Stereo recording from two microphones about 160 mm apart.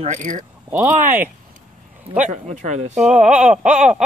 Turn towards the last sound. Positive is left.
turn(degrees=-5)  # may be behind; listen again after turning